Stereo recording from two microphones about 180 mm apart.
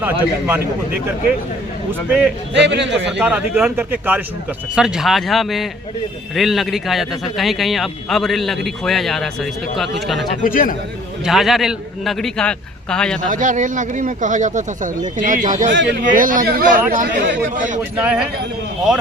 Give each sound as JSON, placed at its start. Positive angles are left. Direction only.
{"t": 0.0, "sound": "speech", "side_deg": -10}
{"t": 1.9, "sound": "a man's voice", "side_deg": -5}
{"t": 2.5, "sound": "speech", "side_deg": -75}
{"t": 3.1, "sound": "a man's voice", "side_deg": -5}
{"t": 10.4, "sound": "a man's voice", "side_deg": 50}
{"t": 11.3, "sound": "a man's voice", "side_deg": 0}
{"t": 13.2, "sound": "speech", "side_deg": -45}
{"t": 17.9, "sound": "speech", "side_deg": -5}